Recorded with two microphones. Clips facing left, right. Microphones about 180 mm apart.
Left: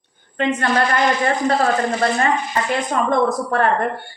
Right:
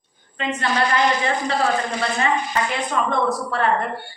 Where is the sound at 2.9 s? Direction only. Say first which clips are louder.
Left 3 dB; 45° left (ahead or behind).